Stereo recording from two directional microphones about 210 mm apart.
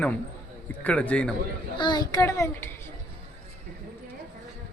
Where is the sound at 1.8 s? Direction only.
20° left (ahead or behind).